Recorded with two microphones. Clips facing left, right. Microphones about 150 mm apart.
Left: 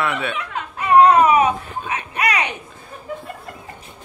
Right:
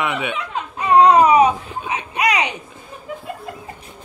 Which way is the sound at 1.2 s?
15° right (ahead or behind).